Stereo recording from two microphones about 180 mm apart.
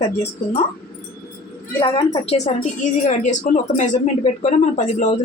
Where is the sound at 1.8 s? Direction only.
30° left (ahead or behind).